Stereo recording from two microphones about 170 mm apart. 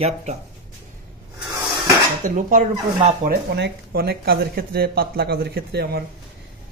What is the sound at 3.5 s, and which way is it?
Speech, 80° right.